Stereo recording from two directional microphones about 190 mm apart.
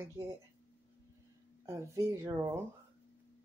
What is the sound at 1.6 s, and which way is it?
Speech, 15° right (ahead or behind).